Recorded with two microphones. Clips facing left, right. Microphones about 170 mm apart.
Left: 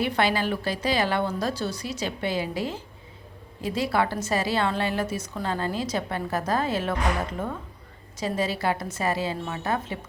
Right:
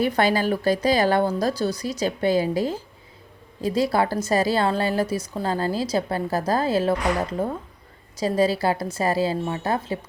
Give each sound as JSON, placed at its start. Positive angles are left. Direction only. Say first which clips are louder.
{"t": 0.0, "sound": "a woman's voice", "louder": "right 4 dB", "side_deg": -40}